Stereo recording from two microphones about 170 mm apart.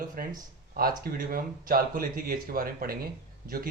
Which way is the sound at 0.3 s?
55° right (ahead or behind).